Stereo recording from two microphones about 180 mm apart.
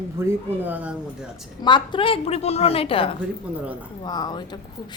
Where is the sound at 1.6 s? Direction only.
25° left (ahead or behind).